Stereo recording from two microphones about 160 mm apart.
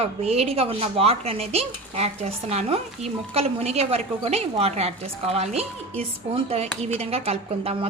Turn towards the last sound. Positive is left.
turn(degrees=-40)  # may be behind; listen again after turning